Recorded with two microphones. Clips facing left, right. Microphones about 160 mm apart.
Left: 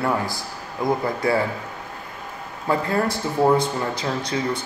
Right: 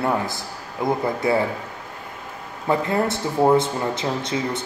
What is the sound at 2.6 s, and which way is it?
Speech, 20° right (ahead or behind).